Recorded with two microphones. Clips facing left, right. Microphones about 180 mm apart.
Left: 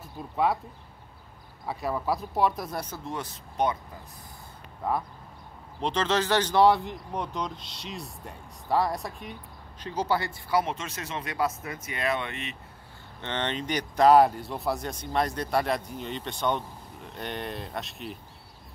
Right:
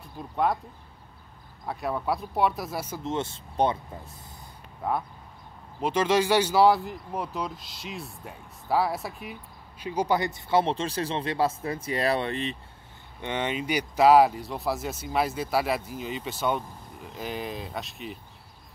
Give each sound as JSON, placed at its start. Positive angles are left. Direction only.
{"t": 0.0, "sound": "speech", "side_deg": 0}
{"t": 1.7, "sound": "speech", "side_deg": 0}
{"t": 3.0, "sound": "speech", "side_deg": -25}
{"t": 5.8, "sound": "speech", "side_deg": -10}
{"t": 13.2, "sound": "speech", "side_deg": -10}